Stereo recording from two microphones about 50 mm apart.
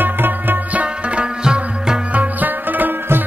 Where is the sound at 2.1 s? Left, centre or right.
Right.